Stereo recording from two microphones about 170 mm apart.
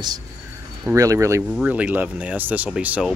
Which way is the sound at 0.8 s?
20° right (ahead or behind).